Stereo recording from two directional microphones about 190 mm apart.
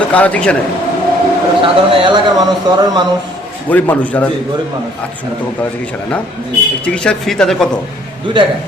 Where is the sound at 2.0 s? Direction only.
25° right (ahead or behind).